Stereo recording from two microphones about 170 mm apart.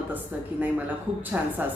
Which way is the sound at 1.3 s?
10° right (ahead or behind).